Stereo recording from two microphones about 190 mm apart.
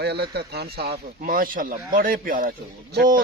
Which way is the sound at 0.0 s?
60° right (ahead or behind).